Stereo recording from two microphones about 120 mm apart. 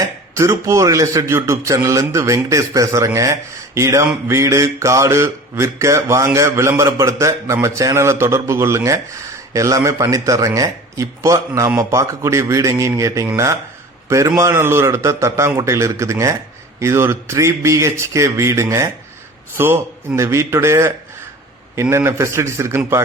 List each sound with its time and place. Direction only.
0.0 s mantra: 25° right (ahead or behind)